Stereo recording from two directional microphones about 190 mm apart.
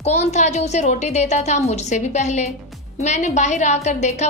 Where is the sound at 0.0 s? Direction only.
35° left (ahead or behind).